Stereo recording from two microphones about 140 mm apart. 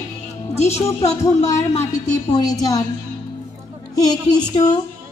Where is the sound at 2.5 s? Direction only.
25° left (ahead or behind).